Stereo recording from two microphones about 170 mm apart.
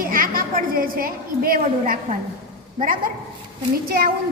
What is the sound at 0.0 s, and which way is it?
A woman's voice, 55° right (ahead or behind).